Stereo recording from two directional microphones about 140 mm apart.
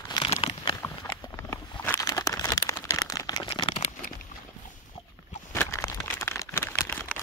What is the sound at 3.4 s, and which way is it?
Crumpling, 35° left (ahead or behind).